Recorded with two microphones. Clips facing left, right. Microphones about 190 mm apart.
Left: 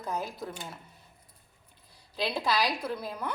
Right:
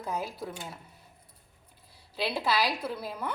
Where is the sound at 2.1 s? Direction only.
5° right (ahead or behind).